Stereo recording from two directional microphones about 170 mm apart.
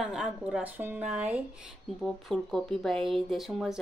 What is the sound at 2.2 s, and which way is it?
Speech, centre (ahead or behind).